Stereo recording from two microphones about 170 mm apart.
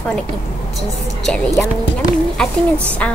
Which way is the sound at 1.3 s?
5° left (ahead or behind).